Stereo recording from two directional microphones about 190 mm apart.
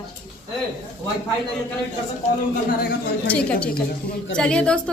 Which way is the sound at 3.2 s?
5° left (ahead or behind).